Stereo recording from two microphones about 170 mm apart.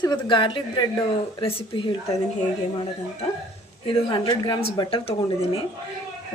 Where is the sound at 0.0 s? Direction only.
25° left (ahead or behind).